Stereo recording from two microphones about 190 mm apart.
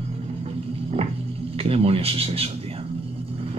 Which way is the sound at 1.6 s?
30° right (ahead or behind).